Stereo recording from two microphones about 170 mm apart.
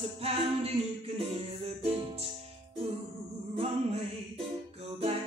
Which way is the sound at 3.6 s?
35° right (ahead or behind).